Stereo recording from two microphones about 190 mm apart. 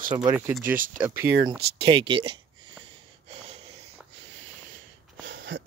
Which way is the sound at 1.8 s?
30° right (ahead or behind).